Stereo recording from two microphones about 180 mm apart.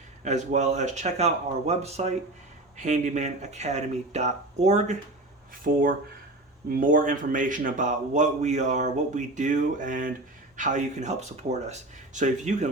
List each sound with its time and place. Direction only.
0.3 s speech: 40° right (ahead or behind)
5.7 s a man's voice: 55° right (ahead or behind)